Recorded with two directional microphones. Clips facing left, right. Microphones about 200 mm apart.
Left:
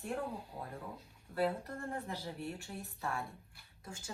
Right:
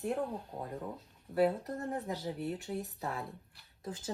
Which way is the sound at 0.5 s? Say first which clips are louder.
Right 4 dB; 40° right (ahead or behind).